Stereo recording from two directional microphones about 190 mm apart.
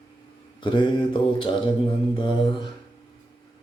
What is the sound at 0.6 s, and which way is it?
Mantra, 25° left (ahead or behind).